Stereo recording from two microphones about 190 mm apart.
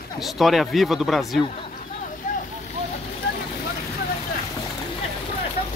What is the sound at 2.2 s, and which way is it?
Vehicle, 40° left (ahead or behind).